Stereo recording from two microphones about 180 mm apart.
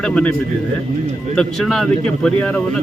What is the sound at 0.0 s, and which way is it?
Speech, 5° left (ahead or behind).